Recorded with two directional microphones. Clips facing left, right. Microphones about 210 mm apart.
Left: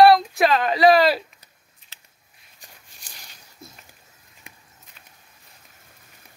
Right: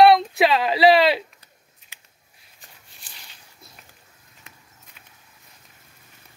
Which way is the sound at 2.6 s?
45° left (ahead or behind).